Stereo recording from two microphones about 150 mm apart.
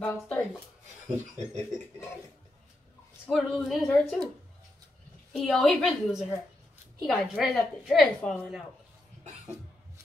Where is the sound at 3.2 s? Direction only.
5° left (ahead or behind).